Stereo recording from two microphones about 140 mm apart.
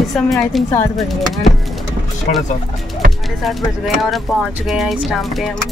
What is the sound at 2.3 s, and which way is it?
Speech, 90° left.